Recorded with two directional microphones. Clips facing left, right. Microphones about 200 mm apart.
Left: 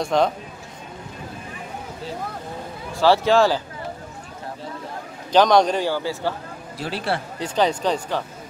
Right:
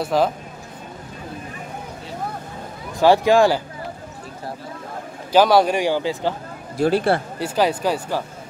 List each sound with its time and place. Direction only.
0.0 s speech: 5° right (ahead or behind)
3.0 s a man's voice: 15° right (ahead or behind)
5.3 s a man's voice: 5° right (ahead or behind)
6.8 s speech: 50° right (ahead or behind)
7.3 s a man's voice: 10° right (ahead or behind)